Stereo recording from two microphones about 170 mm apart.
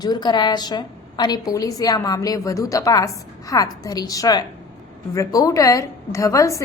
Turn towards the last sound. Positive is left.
turn(degrees=20)  # may be behind; listen again after turning